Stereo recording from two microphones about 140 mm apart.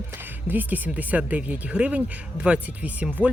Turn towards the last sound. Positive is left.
turn(degrees=-10)  # may be behind; listen again after turning